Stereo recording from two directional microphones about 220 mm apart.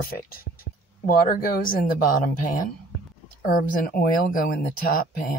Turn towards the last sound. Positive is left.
turn(degrees=40)  # may be behind; listen again after turning